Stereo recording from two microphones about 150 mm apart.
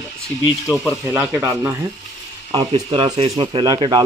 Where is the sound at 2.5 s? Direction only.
30° right (ahead or behind).